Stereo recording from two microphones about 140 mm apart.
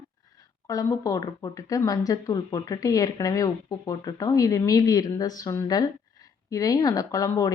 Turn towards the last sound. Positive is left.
turn(degrees=25)  # may be behind; listen again after turning